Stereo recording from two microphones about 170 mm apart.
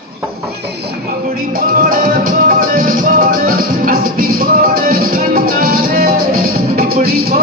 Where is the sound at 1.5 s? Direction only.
60° right (ahead or behind).